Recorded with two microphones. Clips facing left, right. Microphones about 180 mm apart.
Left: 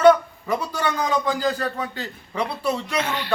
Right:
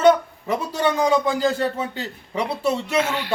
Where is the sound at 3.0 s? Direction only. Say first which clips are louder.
Right 3 dB; 10° right (ahead or behind).